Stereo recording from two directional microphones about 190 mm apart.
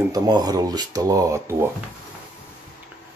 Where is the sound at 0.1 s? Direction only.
20° right (ahead or behind).